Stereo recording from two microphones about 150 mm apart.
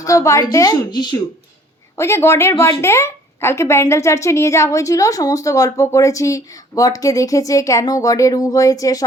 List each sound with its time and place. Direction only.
0.0 s a woman's voice: 20° left (ahead or behind)
2.0 s a woman's voice: 15° left (ahead or behind)